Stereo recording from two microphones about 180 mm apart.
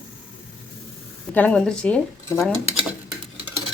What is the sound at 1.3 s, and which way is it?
Speech, 10° left (ahead or behind).